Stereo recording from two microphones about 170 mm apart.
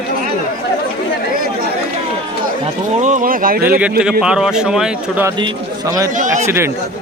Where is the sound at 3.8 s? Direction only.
5° right (ahead or behind).